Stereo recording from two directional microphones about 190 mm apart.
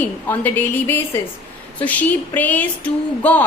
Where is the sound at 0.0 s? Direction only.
10° left (ahead or behind).